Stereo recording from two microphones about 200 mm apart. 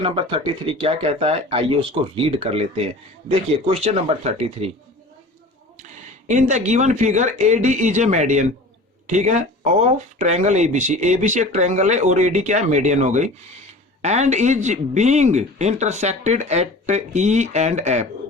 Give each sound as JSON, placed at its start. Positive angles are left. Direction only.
{"t": 0.0, "sound": "speech", "side_deg": -25}
{"t": 5.7, "sound": "speech", "side_deg": -35}